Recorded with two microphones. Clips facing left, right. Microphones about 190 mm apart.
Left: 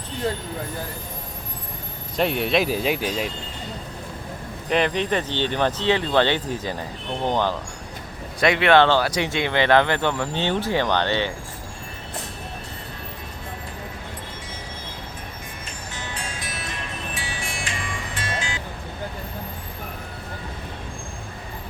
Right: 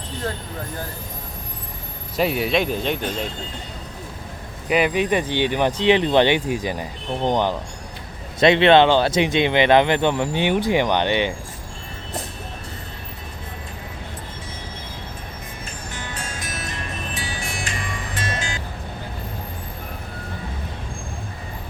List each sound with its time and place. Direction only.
2.1 s speech: 5° right (ahead or behind)
4.7 s speech: 10° right (ahead or behind)
16.1 s music: 45° right (ahead or behind)